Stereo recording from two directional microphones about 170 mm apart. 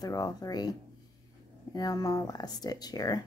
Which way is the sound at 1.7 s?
20° left (ahead or behind).